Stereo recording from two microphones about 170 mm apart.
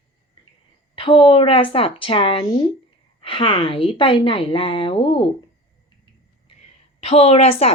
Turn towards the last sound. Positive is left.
turn(degrees=35)  # may be behind; listen again after turning